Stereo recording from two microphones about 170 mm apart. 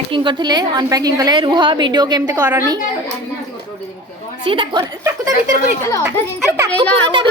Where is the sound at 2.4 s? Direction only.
10° right (ahead or behind).